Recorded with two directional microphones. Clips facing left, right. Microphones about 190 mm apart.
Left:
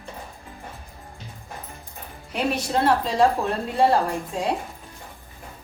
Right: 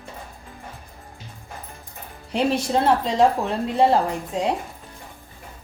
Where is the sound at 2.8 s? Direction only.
20° right (ahead or behind).